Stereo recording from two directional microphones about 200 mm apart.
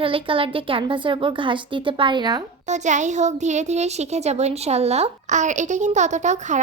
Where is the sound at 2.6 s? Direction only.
35° right (ahead or behind).